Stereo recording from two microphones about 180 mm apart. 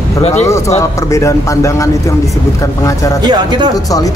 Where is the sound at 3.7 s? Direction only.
20° left (ahead or behind).